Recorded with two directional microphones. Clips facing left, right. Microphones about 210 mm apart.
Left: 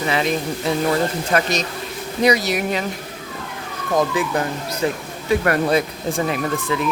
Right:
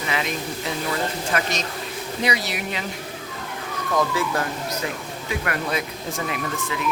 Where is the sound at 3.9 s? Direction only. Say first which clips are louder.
Left 4 dB; 20° left (ahead or behind).